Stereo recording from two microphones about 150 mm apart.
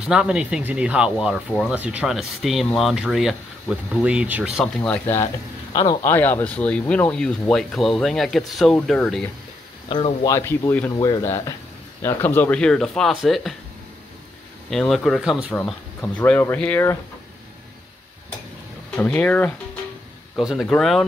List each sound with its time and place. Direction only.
0.0 s speech: 5° right (ahead or behind)
4.8 s speech: 10° left (ahead or behind)
5.7 s speech: 25° left (ahead or behind)
6.0 s speech: 15° left (ahead or behind)
9.8 s speech: 35° left (ahead or behind); by 13.6 s centre (ahead or behind)
14.7 s speech: centre (ahead or behind)
16.0 s speech: 10° left (ahead or behind)
18.9 s speech: 10° left (ahead or behind)
20.3 s speech: centre (ahead or behind)